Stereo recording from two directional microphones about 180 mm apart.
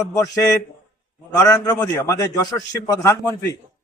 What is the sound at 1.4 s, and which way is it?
A man's voice, 20° left (ahead or behind).